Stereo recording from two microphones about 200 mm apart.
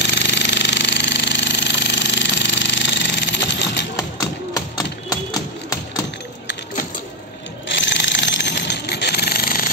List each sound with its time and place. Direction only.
0.0 s jackhammer: 60° left (ahead or behind)
3.9 s a sound: 15° left (ahead or behind)
5.1 s music: 15° left (ahead or behind)
7.7 s jackhammer: 65° left (ahead or behind); by 9.7 s 45° left (ahead or behind)